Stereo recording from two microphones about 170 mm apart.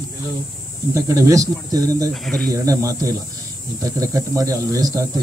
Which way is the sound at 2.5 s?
20° right (ahead or behind).